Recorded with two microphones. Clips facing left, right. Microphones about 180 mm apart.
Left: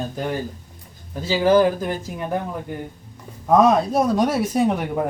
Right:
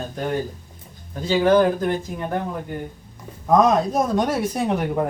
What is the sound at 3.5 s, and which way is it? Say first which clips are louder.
Speech: left 1 dB; 5° left (ahead or behind).